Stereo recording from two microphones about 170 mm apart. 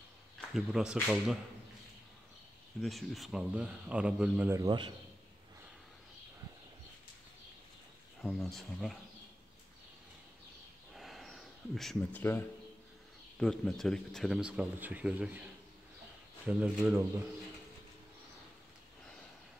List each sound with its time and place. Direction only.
0.4 s speech: centre (ahead or behind)
2.8 s speech: centre (ahead or behind)
4.6 s a man's voice: 25° right (ahead or behind)
8.2 s speech: centre (ahead or behind)
11.0 s a sound: centre (ahead or behind)
13.4 s speech: 5° left (ahead or behind)
16.4 s speech: 5° right (ahead or behind)